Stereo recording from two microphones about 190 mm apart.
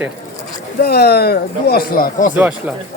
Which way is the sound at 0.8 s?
55° left (ahead or behind).